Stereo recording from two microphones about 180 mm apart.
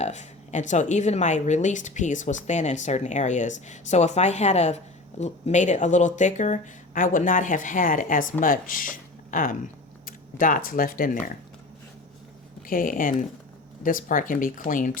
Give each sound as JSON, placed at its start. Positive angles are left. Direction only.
{"t": 0.0, "sound": "speech", "side_deg": 40}
{"t": 12.6, "sound": "speech", "side_deg": 50}